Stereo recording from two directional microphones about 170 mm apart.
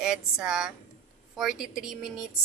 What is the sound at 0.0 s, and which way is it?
A woman's voice, 5° right (ahead or behind).